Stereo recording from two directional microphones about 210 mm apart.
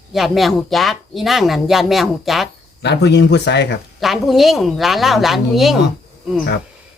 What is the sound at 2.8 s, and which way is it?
Speech, 55° left (ahead or behind).